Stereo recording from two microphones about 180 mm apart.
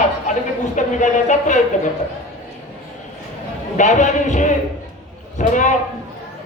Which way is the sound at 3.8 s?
40° left (ahead or behind).